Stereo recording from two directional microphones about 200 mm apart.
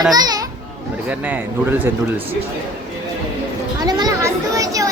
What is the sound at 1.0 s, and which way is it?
Speech, 5° right (ahead or behind).